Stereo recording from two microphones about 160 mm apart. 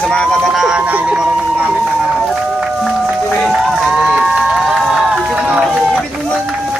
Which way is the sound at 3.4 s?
Centre (ahead or behind).